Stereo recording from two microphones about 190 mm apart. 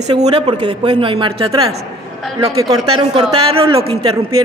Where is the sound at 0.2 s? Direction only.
25° right (ahead or behind).